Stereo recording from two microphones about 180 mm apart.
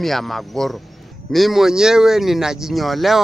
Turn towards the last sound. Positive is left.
turn(degrees=0)  # may be behind; listen again after turning